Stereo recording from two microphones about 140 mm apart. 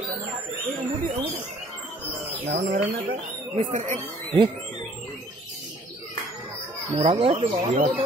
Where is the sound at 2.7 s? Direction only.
55° right (ahead or behind).